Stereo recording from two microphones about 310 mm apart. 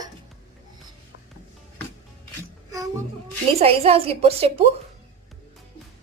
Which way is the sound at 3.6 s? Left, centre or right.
Centre.